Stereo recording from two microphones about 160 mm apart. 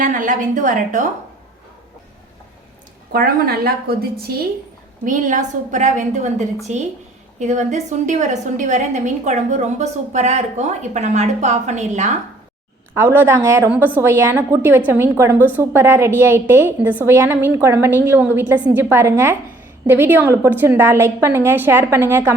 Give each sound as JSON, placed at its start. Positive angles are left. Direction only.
{"t": 0.0, "sound": "a woman's voice", "side_deg": -55}
{"t": 3.1, "sound": "a woman's voice", "side_deg": -75}
{"t": 5.0, "sound": "a woman's voice", "side_deg": -55}
{"t": 12.9, "sound": "a woman's voice", "side_deg": -15}